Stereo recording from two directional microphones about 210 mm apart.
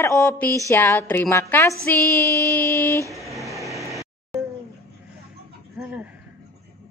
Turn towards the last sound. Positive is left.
turn(degrees=-5)  # may be behind; listen again after turning